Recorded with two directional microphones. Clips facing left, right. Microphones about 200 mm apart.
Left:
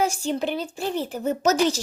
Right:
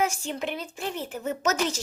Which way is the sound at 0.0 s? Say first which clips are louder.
Left 4 dB; 35° left (ahead or behind).